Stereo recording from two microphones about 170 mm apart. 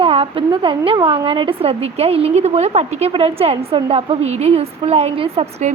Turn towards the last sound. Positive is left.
turn(degrees=-40)  # may be behind; listen again after turning